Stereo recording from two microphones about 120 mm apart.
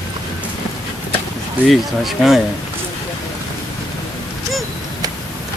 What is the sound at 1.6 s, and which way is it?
Speech, centre (ahead or behind).